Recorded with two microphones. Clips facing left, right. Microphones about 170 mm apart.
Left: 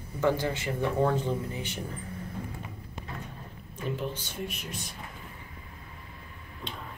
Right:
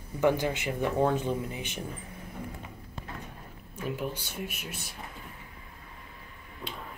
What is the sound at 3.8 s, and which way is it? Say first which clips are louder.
Speech: even; 10° right (ahead or behind).